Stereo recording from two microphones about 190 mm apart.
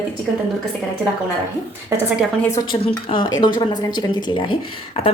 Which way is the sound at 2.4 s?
20° left (ahead or behind).